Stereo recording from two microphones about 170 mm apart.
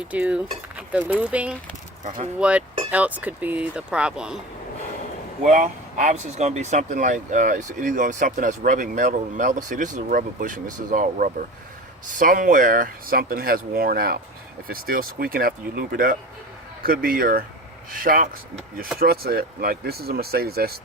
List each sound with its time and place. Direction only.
0.1 s speech: 5° right (ahead or behind)
2.0 s speech: 45° right (ahead or behind)
2.4 s speech: 5° right (ahead or behind)
5.4 s speech: 45° right (ahead or behind); by 20.7 s 65° right (ahead or behind)